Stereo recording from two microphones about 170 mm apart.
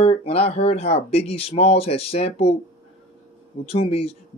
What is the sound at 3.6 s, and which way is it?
Speech, 35° left (ahead or behind).